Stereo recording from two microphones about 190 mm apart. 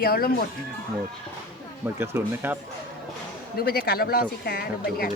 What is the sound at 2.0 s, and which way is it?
Speech, 10° right (ahead or behind).